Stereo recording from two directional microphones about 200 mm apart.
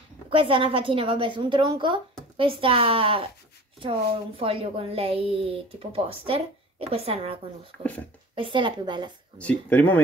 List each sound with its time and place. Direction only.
0.3 s speech: 25° right (ahead or behind)
4.4 s speech: 25° right (ahead or behind)
9.4 s speech: 5° left (ahead or behind)